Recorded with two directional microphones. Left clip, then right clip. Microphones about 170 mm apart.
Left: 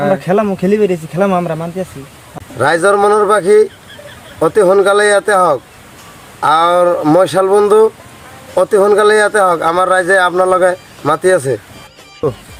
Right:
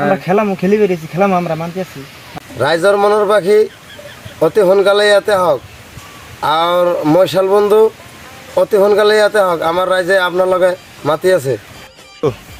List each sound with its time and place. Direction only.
0.3 s speech: 20° left (ahead or behind)
2.6 s speech: 5° left (ahead or behind)